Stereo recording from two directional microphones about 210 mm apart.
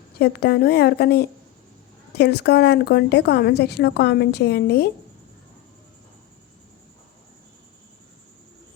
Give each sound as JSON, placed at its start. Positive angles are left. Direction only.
{"t": 0.2, "sound": "a woman's voice", "side_deg": 50}